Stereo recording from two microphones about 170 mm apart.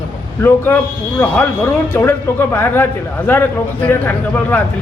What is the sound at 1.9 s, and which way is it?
A man's voice, 15° left (ahead or behind).